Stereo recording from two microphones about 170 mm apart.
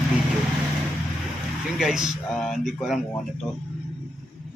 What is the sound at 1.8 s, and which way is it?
Speech, 5° right (ahead or behind).